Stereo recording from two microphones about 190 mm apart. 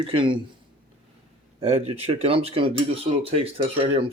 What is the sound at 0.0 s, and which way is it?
Speech, 25° right (ahead or behind).